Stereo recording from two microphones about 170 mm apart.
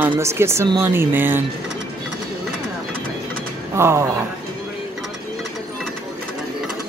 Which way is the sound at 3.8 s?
15° right (ahead or behind).